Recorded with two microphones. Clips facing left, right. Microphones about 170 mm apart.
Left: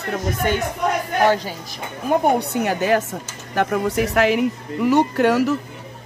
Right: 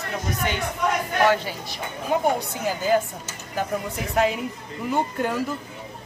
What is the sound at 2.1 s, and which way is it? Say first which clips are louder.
A woman's voice: left 5 dB; 65° left (ahead or behind).